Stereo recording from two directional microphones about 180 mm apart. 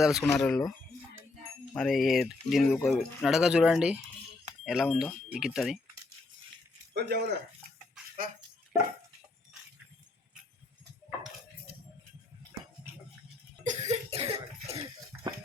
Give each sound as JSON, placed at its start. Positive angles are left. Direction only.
{"t": 0.0, "sound": "speech", "side_deg": 0}
{"t": 1.7, "sound": "speech", "side_deg": 0}
{"t": 6.9, "sound": "speech", "side_deg": -65}
{"t": 13.7, "sound": "cough", "side_deg": -35}